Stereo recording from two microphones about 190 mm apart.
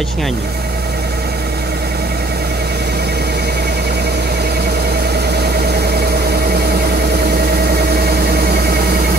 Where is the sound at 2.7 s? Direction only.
60° right (ahead or behind).